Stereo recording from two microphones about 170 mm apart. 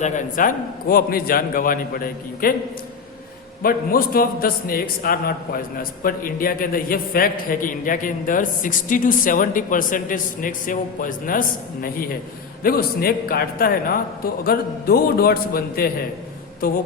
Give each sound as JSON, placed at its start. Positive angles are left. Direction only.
{"t": 0.0, "sound": "a man's voice", "side_deg": 50}
{"t": 3.6, "sound": "a man's voice", "side_deg": 55}